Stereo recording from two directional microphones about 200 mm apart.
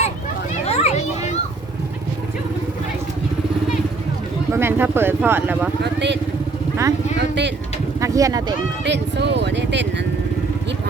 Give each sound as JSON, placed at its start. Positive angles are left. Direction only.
{"t": 0.6, "sound": "children playing", "side_deg": 35}
{"t": 4.5, "sound": "speech", "side_deg": -10}
{"t": 5.8, "sound": "speech", "side_deg": -60}
{"t": 7.2, "sound": "vehicle", "side_deg": -60}
{"t": 8.0, "sound": "speech", "side_deg": -15}
{"t": 8.8, "sound": "speech", "side_deg": -60}